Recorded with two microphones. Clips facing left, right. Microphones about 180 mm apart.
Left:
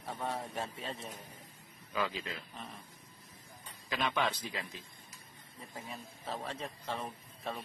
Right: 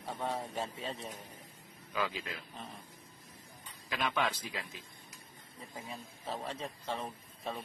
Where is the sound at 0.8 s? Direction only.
Centre (ahead or behind).